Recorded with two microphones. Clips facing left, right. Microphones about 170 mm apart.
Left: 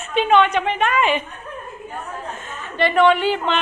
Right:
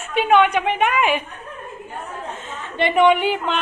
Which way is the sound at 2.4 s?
25° right (ahead or behind).